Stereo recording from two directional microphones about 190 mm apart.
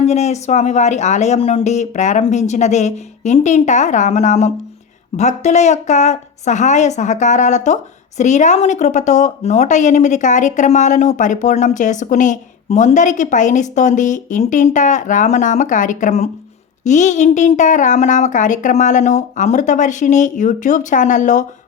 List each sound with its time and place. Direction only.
0.0 s speech: 35° left (ahead or behind)